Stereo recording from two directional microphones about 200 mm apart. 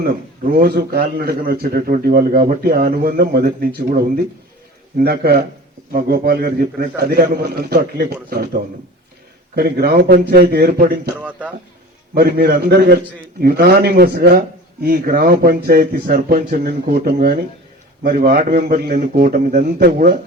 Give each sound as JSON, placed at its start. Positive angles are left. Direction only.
{"t": 0.5, "sound": "a man's voice", "side_deg": -50}
{"t": 9.6, "sound": "a man's voice", "side_deg": -50}
{"t": 11.2, "sound": "speech", "side_deg": -5}
{"t": 12.1, "sound": "a man's voice", "side_deg": -50}